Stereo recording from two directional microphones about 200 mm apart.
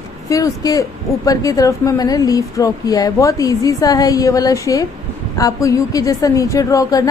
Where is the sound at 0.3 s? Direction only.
15° left (ahead or behind).